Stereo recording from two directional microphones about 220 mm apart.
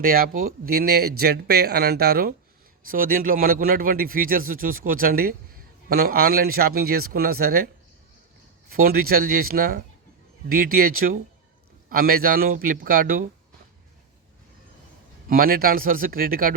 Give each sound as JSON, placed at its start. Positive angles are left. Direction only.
{"t": 0.0, "sound": "a man's voice", "side_deg": -40}
{"t": 8.7, "sound": "a man's voice", "side_deg": -40}
{"t": 15.3, "sound": "a man's voice", "side_deg": -40}